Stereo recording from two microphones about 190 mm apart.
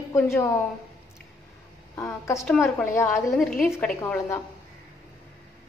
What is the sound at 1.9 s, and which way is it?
A woman's voice, 15° left (ahead or behind).